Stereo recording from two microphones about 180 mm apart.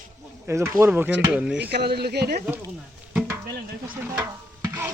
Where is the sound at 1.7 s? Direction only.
65° right (ahead or behind).